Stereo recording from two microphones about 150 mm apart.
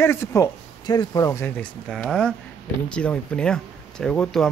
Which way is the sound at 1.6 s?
10° left (ahead or behind).